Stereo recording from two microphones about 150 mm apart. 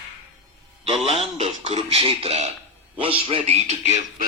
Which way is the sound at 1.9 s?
40° right (ahead or behind).